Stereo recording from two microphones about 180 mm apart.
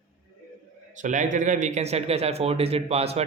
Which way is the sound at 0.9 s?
45° right (ahead or behind).